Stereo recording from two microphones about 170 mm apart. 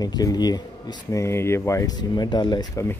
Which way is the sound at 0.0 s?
20° left (ahead or behind).